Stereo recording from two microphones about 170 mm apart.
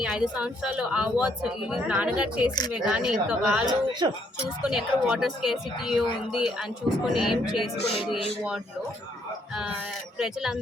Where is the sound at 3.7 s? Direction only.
25° right (ahead or behind).